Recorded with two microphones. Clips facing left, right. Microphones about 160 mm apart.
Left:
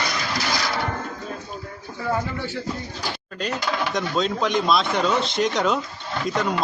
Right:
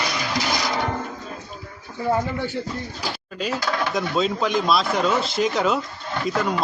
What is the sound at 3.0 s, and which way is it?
Speech, 5° right (ahead or behind).